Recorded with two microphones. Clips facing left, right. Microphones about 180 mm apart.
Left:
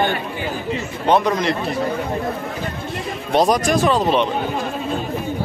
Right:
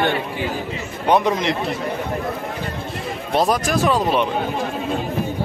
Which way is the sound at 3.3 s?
Centre (ahead or behind).